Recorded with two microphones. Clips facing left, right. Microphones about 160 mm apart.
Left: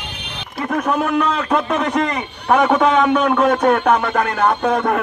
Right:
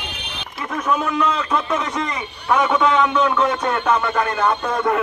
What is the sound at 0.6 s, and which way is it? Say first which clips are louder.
Speech: left 3 dB; 60° left (ahead or behind).